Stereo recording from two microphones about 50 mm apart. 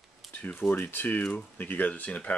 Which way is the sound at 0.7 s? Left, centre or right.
Left.